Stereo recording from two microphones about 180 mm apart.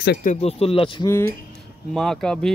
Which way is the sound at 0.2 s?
40° left (ahead or behind).